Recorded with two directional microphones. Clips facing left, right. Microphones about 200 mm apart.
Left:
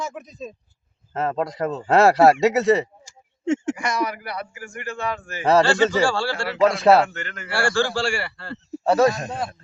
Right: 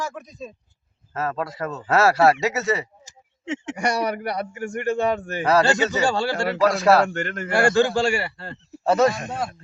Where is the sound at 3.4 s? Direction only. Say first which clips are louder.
Left 7 dB; 50° left (ahead or behind).